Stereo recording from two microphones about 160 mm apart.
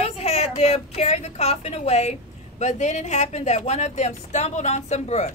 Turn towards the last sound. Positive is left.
turn(degrees=45)  # may be behind; listen again after turning